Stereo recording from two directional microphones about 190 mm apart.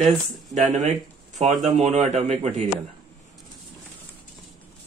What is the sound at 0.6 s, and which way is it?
A man's voice, 35° right (ahead or behind).